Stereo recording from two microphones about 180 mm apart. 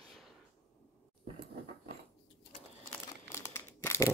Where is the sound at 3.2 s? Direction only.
15° left (ahead or behind).